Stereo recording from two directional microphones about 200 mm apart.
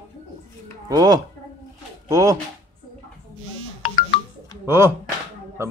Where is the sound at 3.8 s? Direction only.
25° left (ahead or behind).